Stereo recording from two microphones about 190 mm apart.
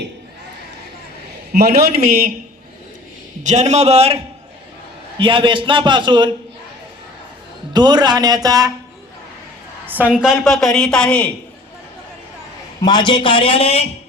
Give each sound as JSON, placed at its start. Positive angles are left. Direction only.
{"t": 1.5, "sound": "a man's voice", "side_deg": -55}
{"t": 3.4, "sound": "a man's voice", "side_deg": -40}
{"t": 5.2, "sound": "a man's voice", "side_deg": -25}
{"t": 7.7, "sound": "a man's voice", "side_deg": -20}
{"t": 9.8, "sound": "a woman's voice", "side_deg": -10}
{"t": 12.8, "sound": "a man's voice", "side_deg": 25}